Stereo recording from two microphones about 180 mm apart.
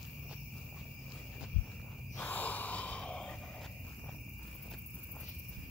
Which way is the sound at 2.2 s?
10° left (ahead or behind).